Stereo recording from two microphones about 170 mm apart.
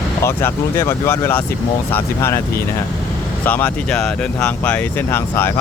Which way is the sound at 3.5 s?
10° left (ahead or behind).